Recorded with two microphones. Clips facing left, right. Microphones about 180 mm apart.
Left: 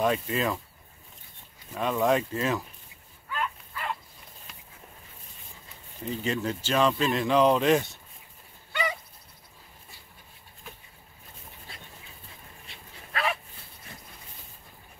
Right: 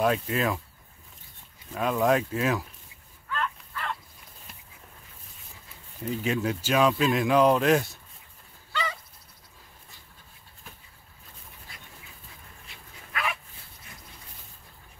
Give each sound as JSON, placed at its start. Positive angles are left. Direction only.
{"t": 0.0, "sound": "speech", "side_deg": 0}
{"t": 1.7, "sound": "speech", "side_deg": -5}
{"t": 3.3, "sound": "dog", "side_deg": 10}
{"t": 6.0, "sound": "speech", "side_deg": -5}
{"t": 12.6, "sound": "dog", "side_deg": 35}